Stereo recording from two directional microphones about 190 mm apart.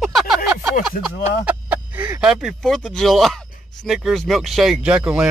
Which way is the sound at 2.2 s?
Centre (ahead or behind).